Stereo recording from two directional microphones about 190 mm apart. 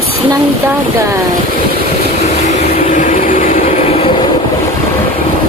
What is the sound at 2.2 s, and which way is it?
Vehicle, 35° left (ahead or behind).